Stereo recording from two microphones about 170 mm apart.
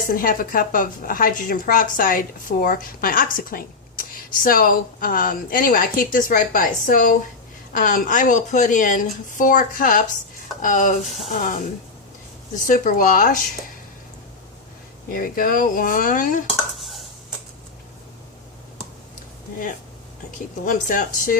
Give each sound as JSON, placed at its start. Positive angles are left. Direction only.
{"t": 0.1, "sound": "a woman's voice", "side_deg": 55}
{"t": 15.1, "sound": "a woman's voice", "side_deg": 55}
{"t": 20.7, "sound": "a woman's voice", "side_deg": 50}